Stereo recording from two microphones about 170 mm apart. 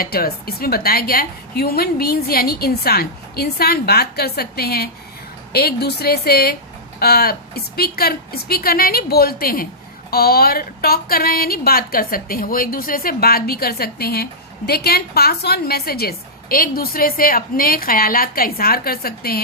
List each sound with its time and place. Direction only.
0.0 s a woman's voice: 60° left (ahead or behind)